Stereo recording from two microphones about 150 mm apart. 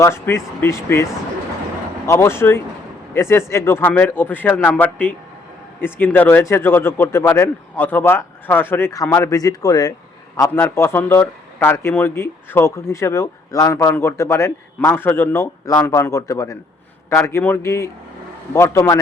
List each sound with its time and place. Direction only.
0.0 s a man's voice: 20° left (ahead or behind)
2.0 s a man's voice: 20° left (ahead or behind)